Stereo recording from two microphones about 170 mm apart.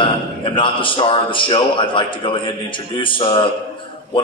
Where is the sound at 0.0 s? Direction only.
30° left (ahead or behind).